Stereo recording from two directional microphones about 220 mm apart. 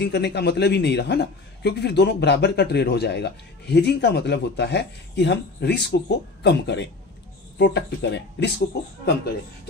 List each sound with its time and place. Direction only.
0.0 s a woman's voice: 50° left (ahead or behind)